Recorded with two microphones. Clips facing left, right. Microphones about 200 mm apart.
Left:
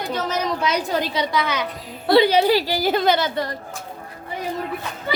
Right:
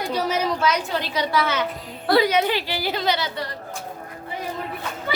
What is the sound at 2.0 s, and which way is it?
A woman's voice, 25° left (ahead or behind).